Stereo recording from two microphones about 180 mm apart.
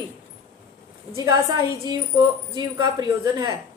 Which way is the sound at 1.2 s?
20° right (ahead or behind).